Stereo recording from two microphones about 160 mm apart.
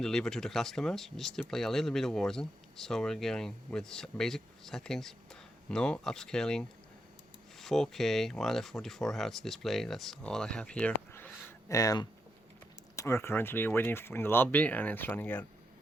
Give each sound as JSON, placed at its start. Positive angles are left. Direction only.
{"t": 0.0, "sound": "speech", "side_deg": 5}
{"t": 11.7, "sound": "speech", "side_deg": 20}